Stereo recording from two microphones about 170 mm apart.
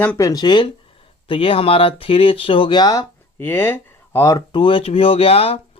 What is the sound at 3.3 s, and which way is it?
Speech, 10° left (ahead or behind).